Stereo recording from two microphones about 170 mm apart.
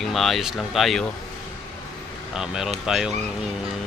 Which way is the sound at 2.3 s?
5° right (ahead or behind).